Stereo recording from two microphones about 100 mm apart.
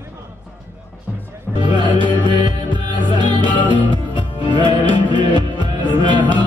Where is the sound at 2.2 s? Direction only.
55° right (ahead or behind).